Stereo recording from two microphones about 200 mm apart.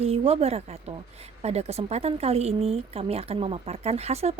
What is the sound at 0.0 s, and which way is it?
Speech, 30° right (ahead or behind).